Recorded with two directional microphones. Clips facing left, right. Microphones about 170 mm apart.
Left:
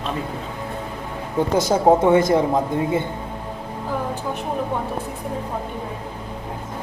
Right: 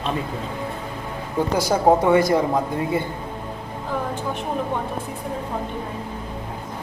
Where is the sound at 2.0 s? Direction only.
20° left (ahead or behind).